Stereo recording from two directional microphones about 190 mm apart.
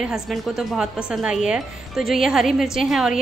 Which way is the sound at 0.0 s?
5° right (ahead or behind).